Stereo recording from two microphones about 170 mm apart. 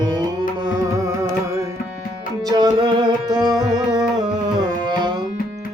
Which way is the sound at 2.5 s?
25° right (ahead or behind).